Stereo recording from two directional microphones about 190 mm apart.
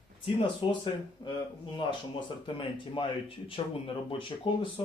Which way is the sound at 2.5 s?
25° left (ahead or behind).